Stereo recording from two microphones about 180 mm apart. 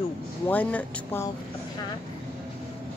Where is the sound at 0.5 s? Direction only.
10° left (ahead or behind).